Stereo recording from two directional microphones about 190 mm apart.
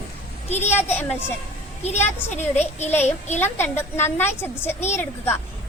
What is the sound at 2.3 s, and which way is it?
Speech, 35° left (ahead or behind).